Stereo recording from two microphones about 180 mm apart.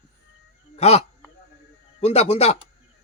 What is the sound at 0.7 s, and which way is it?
Speech, 35° left (ahead or behind).